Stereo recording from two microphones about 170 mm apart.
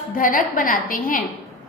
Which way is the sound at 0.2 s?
55° left (ahead or behind).